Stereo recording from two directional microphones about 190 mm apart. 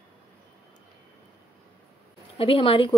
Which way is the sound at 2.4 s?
30° left (ahead or behind).